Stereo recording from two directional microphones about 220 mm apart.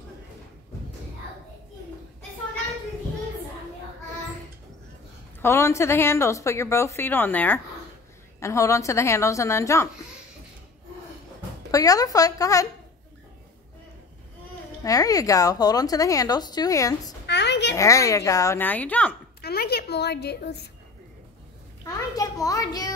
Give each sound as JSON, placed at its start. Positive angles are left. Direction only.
{"t": 5.4, "sound": "a woman's voice", "side_deg": 10}
{"t": 11.7, "sound": "a woman's voice", "side_deg": 15}
{"t": 14.8, "sound": "a woman's voice", "side_deg": 15}
{"t": 17.3, "sound": "a sound", "side_deg": 50}
{"t": 17.7, "sound": "a woman's voice", "side_deg": 15}
{"t": 19.4, "sound": "a woman's voice", "side_deg": 45}
{"t": 22.1, "sound": "a woman's voice", "side_deg": 15}